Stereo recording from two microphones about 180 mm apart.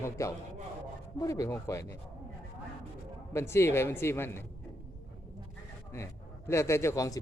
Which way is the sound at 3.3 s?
15° left (ahead or behind).